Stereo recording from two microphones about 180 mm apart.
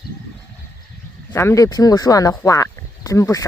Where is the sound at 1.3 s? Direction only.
15° left (ahead or behind).